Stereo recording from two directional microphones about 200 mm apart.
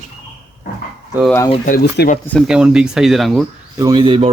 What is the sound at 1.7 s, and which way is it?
Speech, 50° left (ahead or behind).